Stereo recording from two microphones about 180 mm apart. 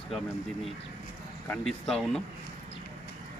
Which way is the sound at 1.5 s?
5° left (ahead or behind).